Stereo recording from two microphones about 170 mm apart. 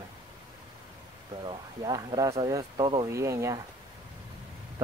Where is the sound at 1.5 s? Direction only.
25° right (ahead or behind).